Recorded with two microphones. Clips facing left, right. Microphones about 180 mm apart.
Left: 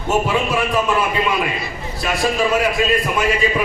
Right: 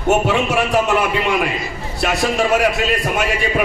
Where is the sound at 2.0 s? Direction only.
70° right (ahead or behind).